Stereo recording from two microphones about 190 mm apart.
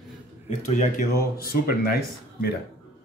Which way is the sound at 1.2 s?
50° left (ahead or behind).